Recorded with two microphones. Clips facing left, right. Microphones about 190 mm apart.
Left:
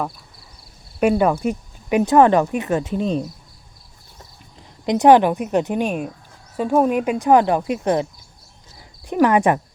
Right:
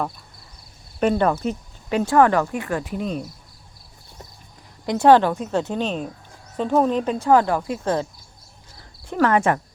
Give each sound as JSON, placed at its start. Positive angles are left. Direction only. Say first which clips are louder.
{"t": 0.9, "sound": "speech", "louder": "left 3 dB", "side_deg": 10}
{"t": 4.9, "sound": "speech", "louder": "left 2 dB", "side_deg": 15}
{"t": 9.0, "sound": "speech", "louder": "left 3 dB", "side_deg": 15}